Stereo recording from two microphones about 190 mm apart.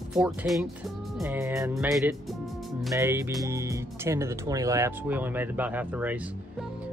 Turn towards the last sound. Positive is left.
turn(degrees=-10)  # may be behind; listen again after turning